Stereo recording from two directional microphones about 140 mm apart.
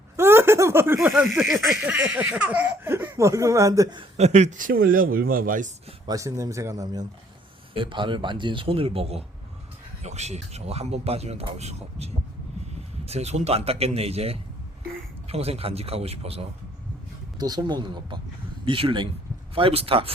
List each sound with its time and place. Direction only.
0.2 s speech: 15° right (ahead or behind)
4.2 s a man's voice: 55° right (ahead or behind); by 5.7 s 75° right (ahead or behind)
6.1 s speech: 25° right (ahead or behind)
7.7 s speech: 35° right (ahead or behind)
17.3 s speech: 30° right (ahead or behind)